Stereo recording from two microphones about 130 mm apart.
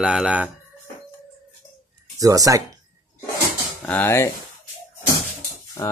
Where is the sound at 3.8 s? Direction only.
15° left (ahead or behind).